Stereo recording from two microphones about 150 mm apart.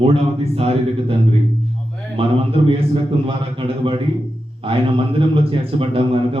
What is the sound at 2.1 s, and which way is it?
A man's voice, 40° right (ahead or behind).